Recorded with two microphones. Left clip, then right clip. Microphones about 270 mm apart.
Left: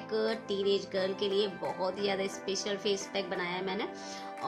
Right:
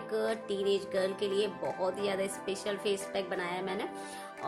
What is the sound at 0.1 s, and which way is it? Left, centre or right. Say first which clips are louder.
Speech: left 1 dB; centre.